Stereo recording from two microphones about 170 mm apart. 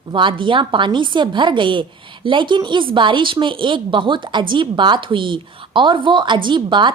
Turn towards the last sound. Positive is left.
turn(degrees=-25)  # may be behind; listen again after turning